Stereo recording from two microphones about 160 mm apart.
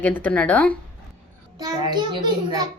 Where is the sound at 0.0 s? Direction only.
10° left (ahead or behind).